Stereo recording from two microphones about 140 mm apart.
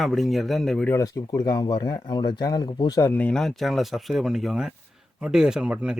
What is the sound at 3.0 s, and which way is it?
Speech, 10° left (ahead or behind).